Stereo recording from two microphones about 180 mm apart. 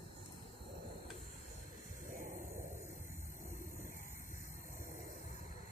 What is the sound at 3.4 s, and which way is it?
Vehicle, 55° right (ahead or behind).